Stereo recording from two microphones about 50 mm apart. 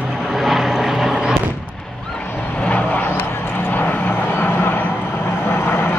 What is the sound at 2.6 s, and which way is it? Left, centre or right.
Vehicle, left.